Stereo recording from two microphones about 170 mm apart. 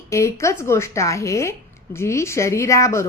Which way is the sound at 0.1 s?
15° left (ahead or behind).